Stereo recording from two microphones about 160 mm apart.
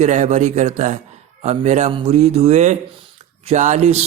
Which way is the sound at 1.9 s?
40° right (ahead or behind).